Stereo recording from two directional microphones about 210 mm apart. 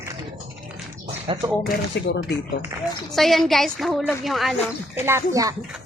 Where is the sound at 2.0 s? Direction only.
60° left (ahead or behind).